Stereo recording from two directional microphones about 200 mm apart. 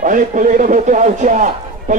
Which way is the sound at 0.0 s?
40° right (ahead or behind).